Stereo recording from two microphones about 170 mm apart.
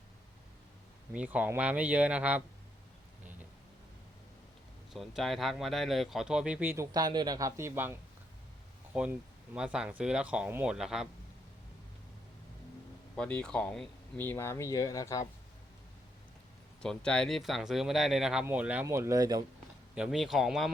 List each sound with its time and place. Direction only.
1.1 s speech: 10° right (ahead or behind)
4.9 s speech: centre (ahead or behind)
6.9 s a man's voice: 25° right (ahead or behind); by 11.1 s 5° right (ahead or behind)
13.1 s speech: 5° left (ahead or behind)
16.8 s speech: 5° left (ahead or behind); by 19.5 s 20° right (ahead or behind)
20.0 s speech: centre (ahead or behind)